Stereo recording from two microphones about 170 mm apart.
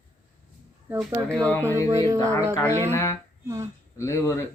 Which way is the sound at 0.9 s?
10° right (ahead or behind).